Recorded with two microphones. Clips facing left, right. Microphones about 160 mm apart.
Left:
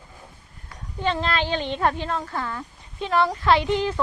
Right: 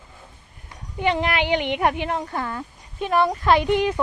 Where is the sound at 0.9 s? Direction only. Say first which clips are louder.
Right 3 dB; 15° right (ahead or behind).